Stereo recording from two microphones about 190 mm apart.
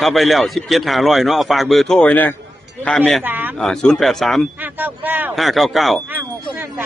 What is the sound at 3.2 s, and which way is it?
Speech, 10° right (ahead or behind).